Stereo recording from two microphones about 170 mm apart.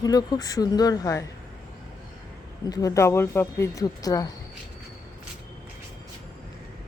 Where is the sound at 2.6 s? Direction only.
20° left (ahead or behind).